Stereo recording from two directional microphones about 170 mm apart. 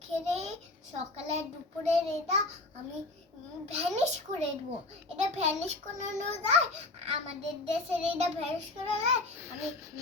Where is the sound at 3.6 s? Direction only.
40° right (ahead or behind).